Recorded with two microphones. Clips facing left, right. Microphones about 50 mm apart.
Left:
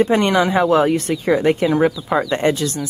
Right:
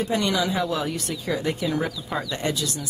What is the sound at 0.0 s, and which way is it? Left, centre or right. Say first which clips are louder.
Speech: left 8 dB; left.